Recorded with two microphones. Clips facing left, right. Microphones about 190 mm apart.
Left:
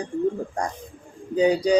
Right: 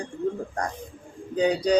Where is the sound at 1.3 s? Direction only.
10° left (ahead or behind).